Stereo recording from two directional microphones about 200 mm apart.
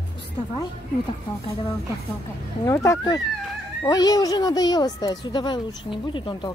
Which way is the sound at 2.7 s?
15° left (ahead or behind).